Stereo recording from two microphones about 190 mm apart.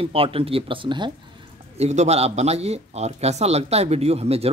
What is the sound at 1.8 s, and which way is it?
A man's voice, 35° right (ahead or behind).